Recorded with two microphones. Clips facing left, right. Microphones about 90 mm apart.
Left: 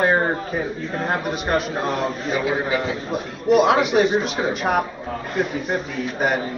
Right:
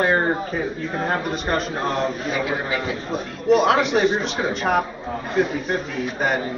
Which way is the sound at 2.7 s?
20° left (ahead or behind).